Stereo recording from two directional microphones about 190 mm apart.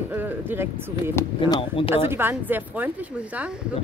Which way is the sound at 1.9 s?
10° right (ahead or behind).